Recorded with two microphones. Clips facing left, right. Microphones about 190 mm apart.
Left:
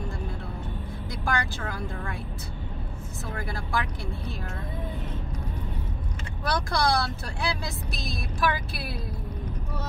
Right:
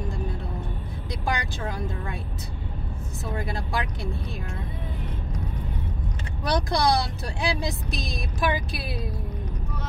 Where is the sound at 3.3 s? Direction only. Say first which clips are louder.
Right 1 dB; 20° right (ahead or behind).